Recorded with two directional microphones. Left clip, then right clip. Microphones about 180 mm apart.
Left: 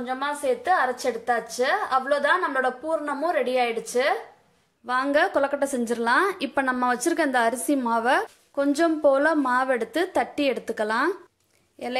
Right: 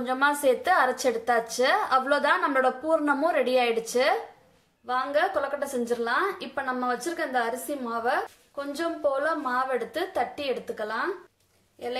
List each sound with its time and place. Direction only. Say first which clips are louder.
0.0 s a woman's voice: right 3 dB; centre (ahead or behind)
4.8 s a woman's voice: left 3 dB; 40° left (ahead or behind)